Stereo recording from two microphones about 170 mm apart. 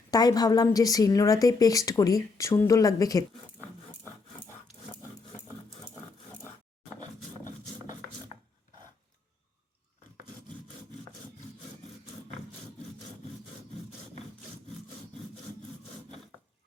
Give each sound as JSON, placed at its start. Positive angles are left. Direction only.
{"t": 0.1, "sound": "a woman's voice", "side_deg": 25}
{"t": 4.0, "sound": "wood", "side_deg": 15}